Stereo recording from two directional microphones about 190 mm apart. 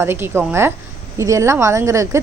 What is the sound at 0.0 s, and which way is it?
A woman's voice, 10° right (ahead or behind).